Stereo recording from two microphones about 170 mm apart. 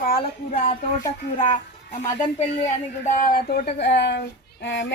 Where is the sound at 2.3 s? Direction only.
45° left (ahead or behind).